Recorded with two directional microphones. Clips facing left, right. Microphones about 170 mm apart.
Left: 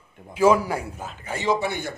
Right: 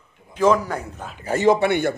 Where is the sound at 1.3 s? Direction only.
50° right (ahead or behind).